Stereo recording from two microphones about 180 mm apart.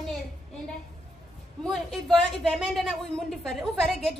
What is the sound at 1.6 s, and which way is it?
A woman's voice, centre (ahead or behind).